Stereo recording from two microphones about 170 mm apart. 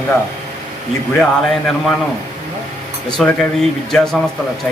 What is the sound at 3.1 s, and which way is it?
A man's voice, centre (ahead or behind).